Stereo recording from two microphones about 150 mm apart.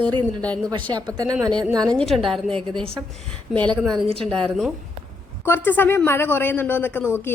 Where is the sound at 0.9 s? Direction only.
25° right (ahead or behind).